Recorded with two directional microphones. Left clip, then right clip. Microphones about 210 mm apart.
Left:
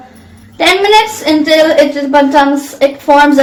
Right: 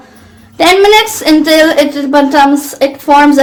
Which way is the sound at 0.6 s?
40° right (ahead or behind).